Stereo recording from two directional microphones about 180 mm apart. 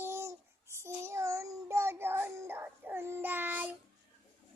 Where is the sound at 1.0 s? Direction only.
15° right (ahead or behind).